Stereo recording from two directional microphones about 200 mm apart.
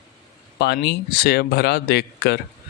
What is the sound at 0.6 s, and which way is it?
Speech, 55° left (ahead or behind).